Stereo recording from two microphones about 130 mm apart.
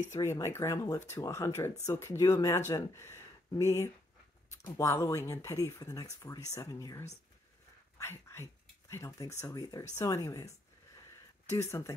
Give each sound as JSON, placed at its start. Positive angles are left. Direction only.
{"t": 0.1, "sound": "speech", "side_deg": 20}